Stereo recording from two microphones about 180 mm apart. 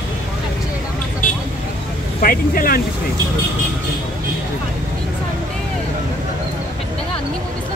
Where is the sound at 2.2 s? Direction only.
50° left (ahead or behind).